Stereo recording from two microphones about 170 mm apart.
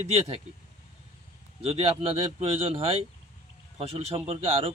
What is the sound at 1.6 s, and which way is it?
A man's voice, 35° right (ahead or behind).